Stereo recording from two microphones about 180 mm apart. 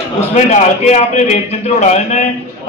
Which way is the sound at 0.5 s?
40° left (ahead or behind).